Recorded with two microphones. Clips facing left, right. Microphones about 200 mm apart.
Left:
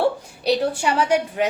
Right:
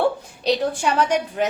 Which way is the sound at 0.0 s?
10° left (ahead or behind).